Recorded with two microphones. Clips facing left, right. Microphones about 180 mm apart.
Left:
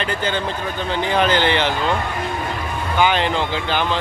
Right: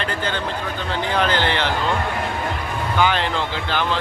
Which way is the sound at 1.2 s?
15° left (ahead or behind).